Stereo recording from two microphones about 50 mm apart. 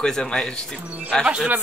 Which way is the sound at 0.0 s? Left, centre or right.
Centre.